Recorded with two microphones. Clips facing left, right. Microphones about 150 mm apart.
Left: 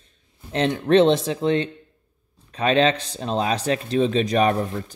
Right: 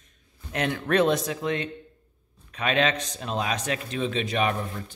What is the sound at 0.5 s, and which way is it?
Speech, 30° left (ahead or behind).